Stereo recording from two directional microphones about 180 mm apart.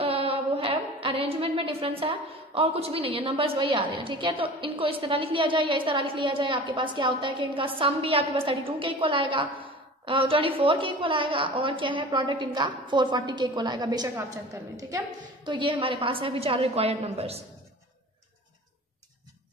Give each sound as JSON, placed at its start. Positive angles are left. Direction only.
{"t": 0.0, "sound": "a woman's voice", "side_deg": -30}